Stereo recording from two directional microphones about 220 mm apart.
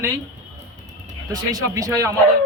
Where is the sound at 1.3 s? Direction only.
15° right (ahead or behind).